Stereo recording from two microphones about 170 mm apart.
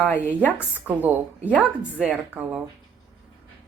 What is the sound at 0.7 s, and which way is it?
A woman's voice, 10° right (ahead or behind).